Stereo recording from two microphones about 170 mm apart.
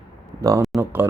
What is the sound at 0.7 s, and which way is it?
Speech, centre (ahead or behind).